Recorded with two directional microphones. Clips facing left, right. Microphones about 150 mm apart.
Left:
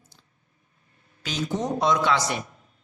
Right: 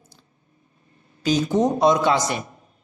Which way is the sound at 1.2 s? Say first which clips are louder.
Right 8 dB; 40° right (ahead or behind).